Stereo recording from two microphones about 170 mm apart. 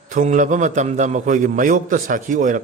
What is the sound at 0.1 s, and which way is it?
A man's voice, 45° right (ahead or behind).